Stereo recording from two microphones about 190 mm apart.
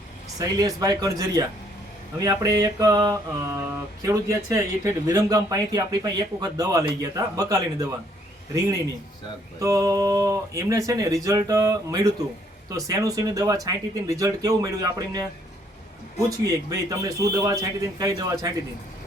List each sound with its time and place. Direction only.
0.3 s speech: 20° right (ahead or behind)
9.6 s speech: 15° right (ahead or behind)
16.4 s speech: 20° right (ahead or behind)